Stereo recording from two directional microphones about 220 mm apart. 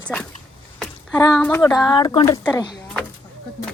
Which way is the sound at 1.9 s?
20° left (ahead or behind).